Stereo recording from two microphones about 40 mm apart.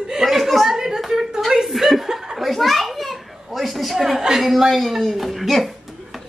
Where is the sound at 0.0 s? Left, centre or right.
Centre.